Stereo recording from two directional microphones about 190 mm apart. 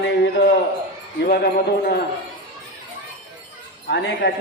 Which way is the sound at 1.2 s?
55° left (ahead or behind).